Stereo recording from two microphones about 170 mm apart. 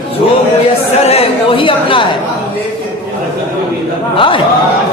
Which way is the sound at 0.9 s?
35° left (ahead or behind).